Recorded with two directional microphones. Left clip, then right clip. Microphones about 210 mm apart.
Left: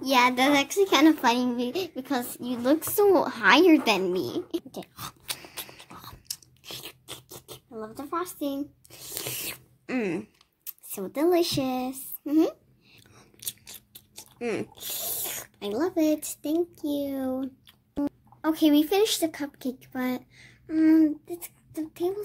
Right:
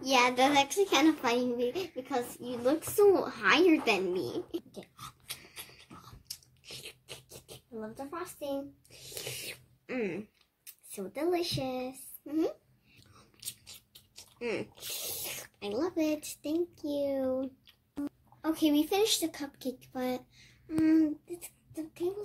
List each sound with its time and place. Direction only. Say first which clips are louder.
0.0 s child singing: left 4 dB; 45° left (ahead or behind)
9.0 s a sound: left 5 dB; 50° left (ahead or behind)
14.8 s speech: left 4 dB; 45° left (ahead or behind)